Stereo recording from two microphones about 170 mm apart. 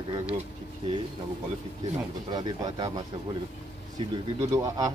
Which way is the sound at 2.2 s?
25° right (ahead or behind).